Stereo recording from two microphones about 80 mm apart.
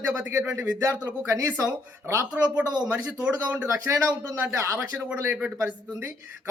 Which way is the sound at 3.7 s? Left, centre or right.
Right.